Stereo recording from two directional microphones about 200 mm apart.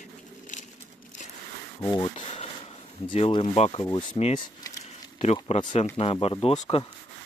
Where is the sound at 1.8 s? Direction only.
20° left (ahead or behind).